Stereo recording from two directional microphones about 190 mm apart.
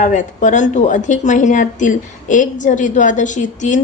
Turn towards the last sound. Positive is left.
turn(degrees=40)  # may be behind; listen again after turning